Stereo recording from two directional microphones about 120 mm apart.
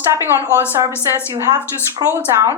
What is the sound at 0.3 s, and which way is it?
Speech, 20° right (ahead or behind).